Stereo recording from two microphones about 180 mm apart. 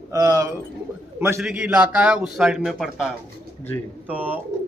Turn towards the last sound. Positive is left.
turn(degrees=-10)  # may be behind; listen again after turning